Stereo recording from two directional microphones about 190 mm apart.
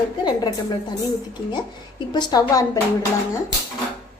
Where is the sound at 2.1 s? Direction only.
20° left (ahead or behind).